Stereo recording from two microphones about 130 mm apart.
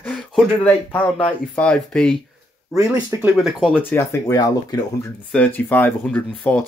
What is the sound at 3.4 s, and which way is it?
Speech, centre (ahead or behind).